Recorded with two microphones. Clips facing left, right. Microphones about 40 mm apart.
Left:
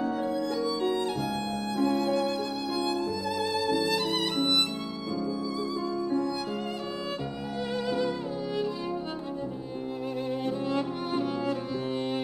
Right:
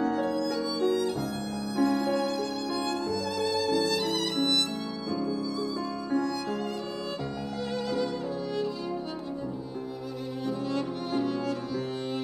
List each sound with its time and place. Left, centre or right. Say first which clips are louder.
0.1 s music: right 1 dB; centre
0.7 s violin: right 1 dB; left
2.1 s music: even; left
7.7 s music: left 1 dB; centre
10.7 s music: left 1 dB; centre